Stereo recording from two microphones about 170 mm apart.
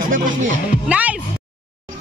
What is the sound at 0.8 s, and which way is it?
Music, 10° right (ahead or behind).